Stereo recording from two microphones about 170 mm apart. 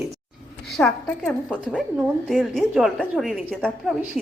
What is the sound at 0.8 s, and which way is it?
A woman's voice, 5° left (ahead or behind).